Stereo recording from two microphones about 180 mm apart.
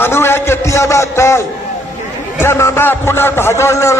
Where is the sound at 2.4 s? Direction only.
15° left (ahead or behind).